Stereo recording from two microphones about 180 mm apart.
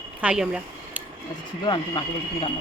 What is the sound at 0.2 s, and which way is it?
Speech, 5° right (ahead or behind).